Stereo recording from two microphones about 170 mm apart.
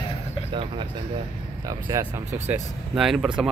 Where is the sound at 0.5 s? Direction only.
30° right (ahead or behind).